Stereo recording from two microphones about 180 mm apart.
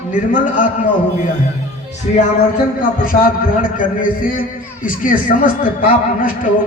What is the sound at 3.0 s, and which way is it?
Speech, 50° left (ahead or behind).